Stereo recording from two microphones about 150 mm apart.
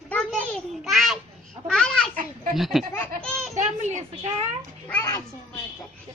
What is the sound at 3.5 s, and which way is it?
Speech, 50° right (ahead or behind).